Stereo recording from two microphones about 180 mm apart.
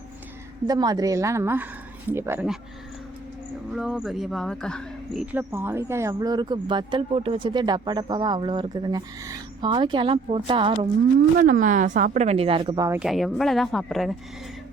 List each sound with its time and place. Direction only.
0.7 s a woman's voice: 20° right (ahead or behind)
3.7 s speech: 5° right (ahead or behind)
5.2 s speech: 10° right (ahead or behind); by 10.8 s 30° right (ahead or behind)
11.3 s speech: 50° right (ahead or behind); by 12.8 s 30° right (ahead or behind)
13.0 s speech: centre (ahead or behind)